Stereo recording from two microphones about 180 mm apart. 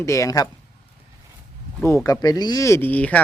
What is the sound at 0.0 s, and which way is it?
Speech, 15° left (ahead or behind).